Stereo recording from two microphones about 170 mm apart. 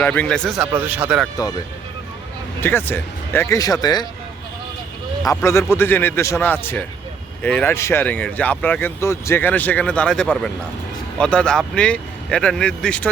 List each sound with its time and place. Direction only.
0.0 s speech: 10° left (ahead or behind)
2.6 s speech: 10° left (ahead or behind)
5.3 s speech: 15° left (ahead or behind)